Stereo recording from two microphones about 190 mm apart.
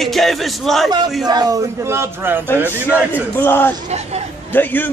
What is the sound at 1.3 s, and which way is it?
A man's voice, 20° right (ahead or behind).